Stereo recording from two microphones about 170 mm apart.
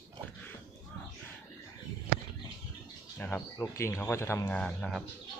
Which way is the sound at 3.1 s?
10° left (ahead or behind).